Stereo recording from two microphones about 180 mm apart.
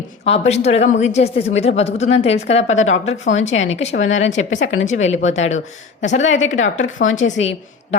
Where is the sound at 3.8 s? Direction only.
40° left (ahead or behind).